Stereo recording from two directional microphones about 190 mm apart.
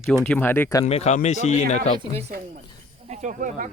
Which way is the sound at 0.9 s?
35° left (ahead or behind).